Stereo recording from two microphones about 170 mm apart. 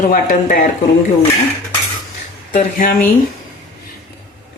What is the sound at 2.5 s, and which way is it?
Speech, 55° left (ahead or behind).